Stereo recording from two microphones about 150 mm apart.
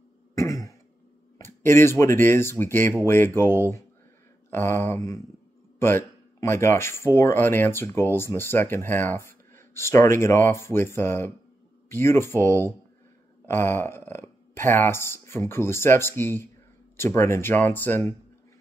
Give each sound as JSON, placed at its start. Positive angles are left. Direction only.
{"t": 0.3, "sound": "throat clearing", "side_deg": 20}
{"t": 1.4, "sound": "speech", "side_deg": 15}